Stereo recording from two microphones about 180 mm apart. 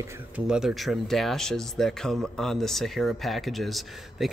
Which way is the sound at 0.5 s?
Centre (ahead or behind).